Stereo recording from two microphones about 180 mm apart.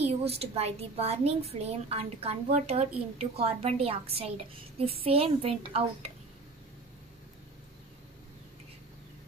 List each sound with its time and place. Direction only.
0.0 s a woman's voice: 35° right (ahead or behind)